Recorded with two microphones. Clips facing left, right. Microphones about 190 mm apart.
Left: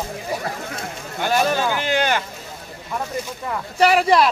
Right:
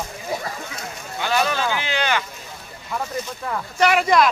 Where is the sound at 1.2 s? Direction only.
45° left (ahead or behind).